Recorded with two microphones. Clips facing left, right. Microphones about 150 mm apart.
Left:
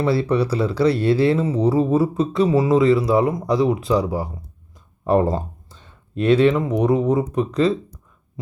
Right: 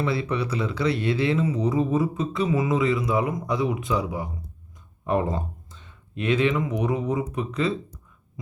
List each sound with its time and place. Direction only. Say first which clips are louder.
0.0 s speech: left 7 dB; 35° left (ahead or behind)